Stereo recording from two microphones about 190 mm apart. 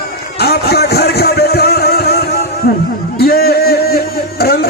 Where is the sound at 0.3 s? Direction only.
55° left (ahead or behind).